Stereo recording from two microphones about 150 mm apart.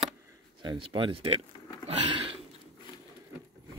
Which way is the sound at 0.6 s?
30° right (ahead or behind).